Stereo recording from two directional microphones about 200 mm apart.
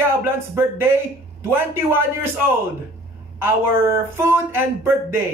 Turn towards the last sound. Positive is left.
turn(degrees=-10)  # may be behind; listen again after turning